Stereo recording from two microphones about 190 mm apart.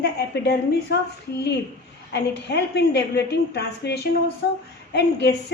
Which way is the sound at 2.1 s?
60° left (ahead or behind).